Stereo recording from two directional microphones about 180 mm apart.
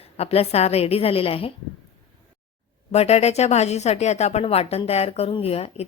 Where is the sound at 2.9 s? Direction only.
35° left (ahead or behind).